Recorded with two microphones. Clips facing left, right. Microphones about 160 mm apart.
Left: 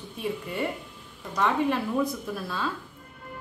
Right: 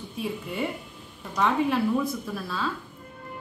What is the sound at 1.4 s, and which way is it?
A woman's voice, 5° right (ahead or behind).